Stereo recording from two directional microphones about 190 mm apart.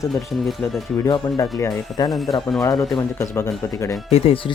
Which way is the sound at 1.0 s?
15° left (ahead or behind).